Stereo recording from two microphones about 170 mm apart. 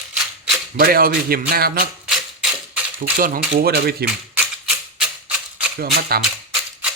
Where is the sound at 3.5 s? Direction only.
70° right (ahead or behind).